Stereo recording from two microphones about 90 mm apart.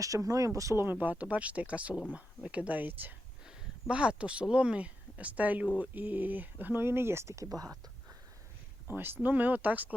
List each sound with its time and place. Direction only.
0.0 s speech: 40° right (ahead or behind)
0.9 s speech: 20° right (ahead or behind); by 7.8 s 40° right (ahead or behind)
9.0 s speech: 25° right (ahead or behind)